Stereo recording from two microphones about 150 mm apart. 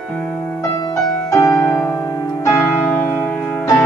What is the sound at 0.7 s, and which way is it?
Music, 30° left (ahead or behind).